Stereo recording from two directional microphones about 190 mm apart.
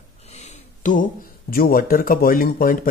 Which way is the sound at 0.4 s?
40° left (ahead or behind).